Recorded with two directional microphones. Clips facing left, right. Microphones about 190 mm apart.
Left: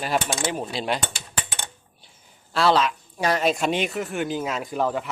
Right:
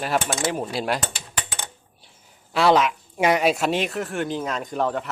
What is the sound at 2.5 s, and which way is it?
Speech, 15° right (ahead or behind).